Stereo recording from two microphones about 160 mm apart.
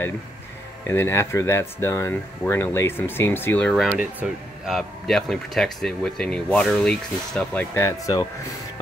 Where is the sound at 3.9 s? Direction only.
10° right (ahead or behind).